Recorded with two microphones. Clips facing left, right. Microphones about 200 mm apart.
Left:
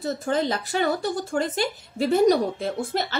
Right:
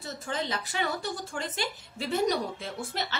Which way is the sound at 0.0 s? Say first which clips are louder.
Left 10 dB; 40° left (ahead or behind).